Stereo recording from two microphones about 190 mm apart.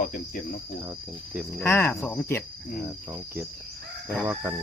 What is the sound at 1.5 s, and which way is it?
Speech, 10° left (ahead or behind).